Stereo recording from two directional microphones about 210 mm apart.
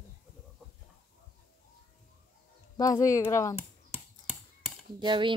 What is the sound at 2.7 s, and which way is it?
Speech, 15° left (ahead or behind).